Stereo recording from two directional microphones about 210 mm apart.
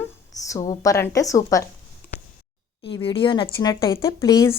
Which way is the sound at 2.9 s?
25° left (ahead or behind).